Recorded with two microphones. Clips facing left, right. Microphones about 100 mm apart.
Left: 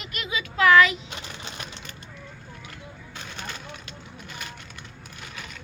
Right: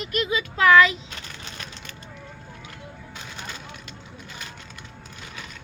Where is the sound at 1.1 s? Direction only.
25° left (ahead or behind).